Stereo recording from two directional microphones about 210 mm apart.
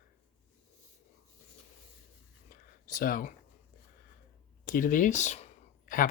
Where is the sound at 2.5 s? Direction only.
40° left (ahead or behind).